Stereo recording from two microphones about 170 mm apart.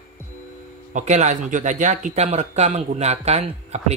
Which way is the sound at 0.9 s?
45° right (ahead or behind).